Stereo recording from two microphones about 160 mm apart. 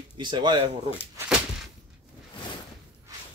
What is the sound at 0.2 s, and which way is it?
Speech, 30° right (ahead or behind).